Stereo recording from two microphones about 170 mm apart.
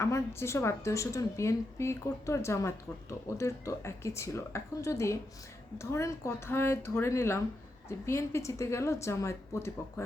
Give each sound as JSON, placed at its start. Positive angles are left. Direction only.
{"t": 0.0, "sound": "speech", "side_deg": 15}